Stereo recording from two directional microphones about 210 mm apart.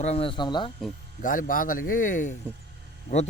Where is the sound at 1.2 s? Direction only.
40° left (ahead or behind).